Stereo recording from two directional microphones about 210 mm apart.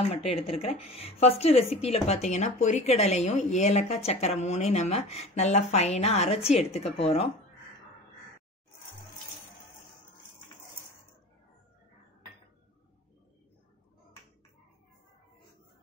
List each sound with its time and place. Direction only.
0.1 s speech: 30° left (ahead or behind)